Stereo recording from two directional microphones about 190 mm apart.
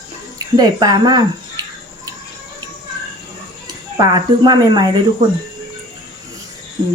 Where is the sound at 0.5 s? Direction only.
20° right (ahead or behind).